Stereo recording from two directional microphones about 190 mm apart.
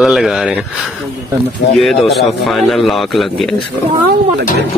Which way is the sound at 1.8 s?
Centre (ahead or behind).